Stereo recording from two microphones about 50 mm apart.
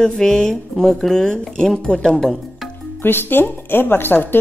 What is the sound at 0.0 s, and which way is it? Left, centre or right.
Speech, centre.